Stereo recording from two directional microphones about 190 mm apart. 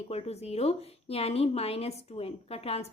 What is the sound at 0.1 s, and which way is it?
A woman's voice, 35° left (ahead or behind).